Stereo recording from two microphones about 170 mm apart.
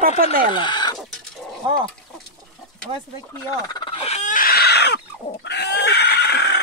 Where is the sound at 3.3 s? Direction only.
25° left (ahead or behind); by 4.9 s 80° left.